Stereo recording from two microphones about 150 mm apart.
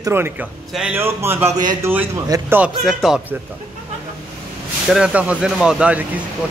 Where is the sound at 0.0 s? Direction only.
15° right (ahead or behind).